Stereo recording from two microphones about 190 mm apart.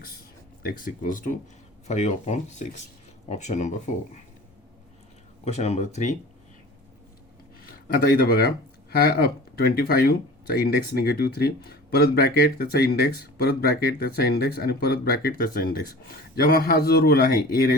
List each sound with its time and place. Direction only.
0.6 s speech: 45° left (ahead or behind)
5.5 s speech: 35° left (ahead or behind)
7.6 s a sound: 50° left (ahead or behind)
8.9 s speech: 55° left (ahead or behind)